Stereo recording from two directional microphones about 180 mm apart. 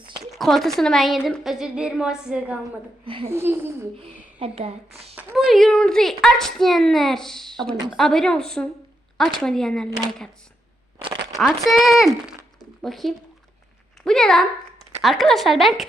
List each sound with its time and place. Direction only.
0.3 s a child's voice: centre (ahead or behind)
4.4 s a woman's voice: 35° right (ahead or behind)
5.3 s a child's voice: centre (ahead or behind)
11.3 s a child's voice: centre (ahead or behind)